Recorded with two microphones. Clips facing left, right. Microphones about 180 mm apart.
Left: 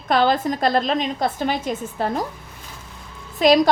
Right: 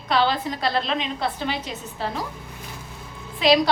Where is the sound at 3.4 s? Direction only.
45° left (ahead or behind).